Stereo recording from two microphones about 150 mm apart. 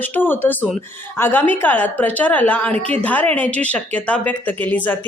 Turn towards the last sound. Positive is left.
turn(degrees=10)  # may be behind; listen again after turning